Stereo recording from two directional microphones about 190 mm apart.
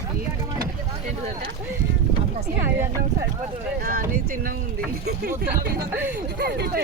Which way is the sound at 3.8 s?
50° right (ahead or behind).